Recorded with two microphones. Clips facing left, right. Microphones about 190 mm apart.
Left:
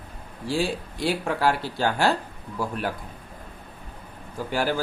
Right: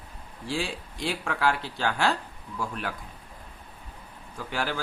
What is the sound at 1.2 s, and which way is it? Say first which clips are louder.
Speech: left 1 dB; 35° left (ahead or behind).